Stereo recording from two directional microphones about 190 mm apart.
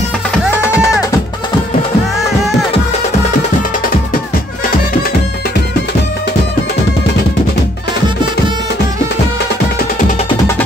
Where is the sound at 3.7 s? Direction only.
45° left (ahead or behind).